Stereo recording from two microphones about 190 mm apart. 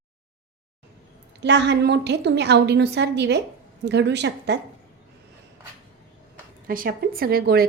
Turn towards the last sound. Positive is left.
turn(degrees=-55)  # may be behind; listen again after turning